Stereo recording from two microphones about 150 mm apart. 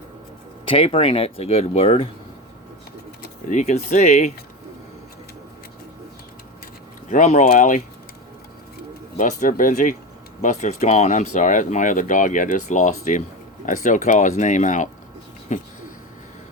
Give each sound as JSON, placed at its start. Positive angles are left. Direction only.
{"t": 0.6, "sound": "speech", "side_deg": 35}
{"t": 3.5, "sound": "speech", "side_deg": 55}
{"t": 7.1, "sound": "speech", "side_deg": 55}
{"t": 9.1, "sound": "speech", "side_deg": 55}